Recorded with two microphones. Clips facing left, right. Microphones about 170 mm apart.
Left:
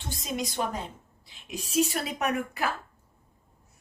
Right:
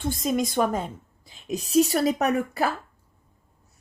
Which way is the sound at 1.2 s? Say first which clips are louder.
Right 8 dB; 40° right (ahead or behind).